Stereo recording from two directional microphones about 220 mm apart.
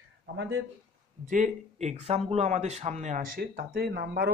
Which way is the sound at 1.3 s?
30° right (ahead or behind).